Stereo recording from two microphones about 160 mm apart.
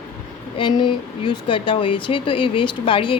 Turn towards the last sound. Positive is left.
turn(degrees=35)  # may be behind; listen again after turning